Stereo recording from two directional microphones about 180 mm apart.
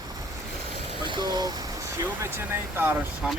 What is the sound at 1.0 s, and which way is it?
Speech, 25° right (ahead or behind).